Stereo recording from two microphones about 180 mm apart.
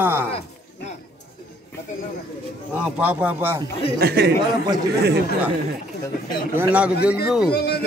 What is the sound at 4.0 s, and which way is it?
Speech, 60° right (ahead or behind).